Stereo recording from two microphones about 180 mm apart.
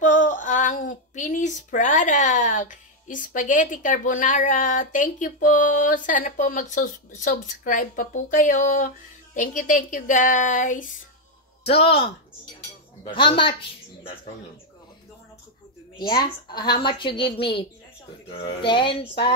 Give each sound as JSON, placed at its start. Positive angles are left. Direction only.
{"t": 0.0, "sound": "speech", "side_deg": 45}
{"t": 11.6, "sound": "a woman's voice", "side_deg": 35}
{"t": 16.4, "sound": "a woman's voice", "side_deg": 25}